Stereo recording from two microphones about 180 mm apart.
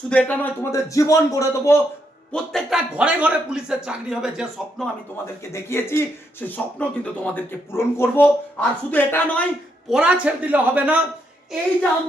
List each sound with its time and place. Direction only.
0.1 s speech: 10° left (ahead or behind)
2.3 s speech: centre (ahead or behind)
5.2 s speech: 15° left (ahead or behind)
9.9 s a man's voice: 5° right (ahead or behind)